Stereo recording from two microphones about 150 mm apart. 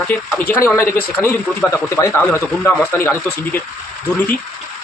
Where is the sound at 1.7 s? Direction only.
20° left (ahead or behind).